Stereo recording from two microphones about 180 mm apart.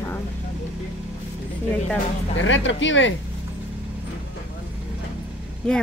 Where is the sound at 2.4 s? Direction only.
90° left.